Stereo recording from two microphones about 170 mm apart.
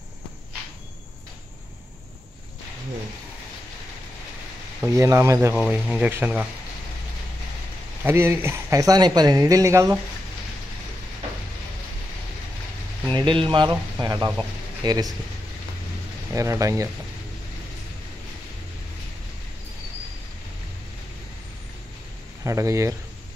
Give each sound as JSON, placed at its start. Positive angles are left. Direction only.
{"t": 4.8, "sound": "speech", "side_deg": -15}
{"t": 8.0, "sound": "speech", "side_deg": -15}
{"t": 13.1, "sound": "speech", "side_deg": -30}
{"t": 16.3, "sound": "speech", "side_deg": -20}
{"t": 22.4, "sound": "speech", "side_deg": -20}